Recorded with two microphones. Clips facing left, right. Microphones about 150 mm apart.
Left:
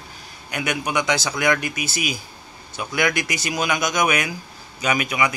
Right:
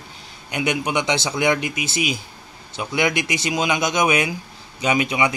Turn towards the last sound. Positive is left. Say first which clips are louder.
# right 2 dB
turn(degrees=-25)  # may be behind; listen again after turning